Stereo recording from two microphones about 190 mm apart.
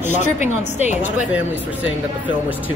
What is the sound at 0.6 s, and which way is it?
Speech, 35° left (ahead or behind).